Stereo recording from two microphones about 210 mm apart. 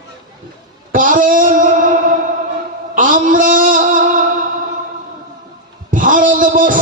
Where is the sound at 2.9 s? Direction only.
40° right (ahead or behind).